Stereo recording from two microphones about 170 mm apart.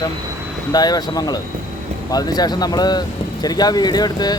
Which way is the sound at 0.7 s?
25° left (ahead or behind).